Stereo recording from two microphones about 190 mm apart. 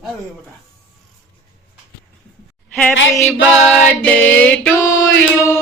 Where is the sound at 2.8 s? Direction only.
5° left (ahead or behind).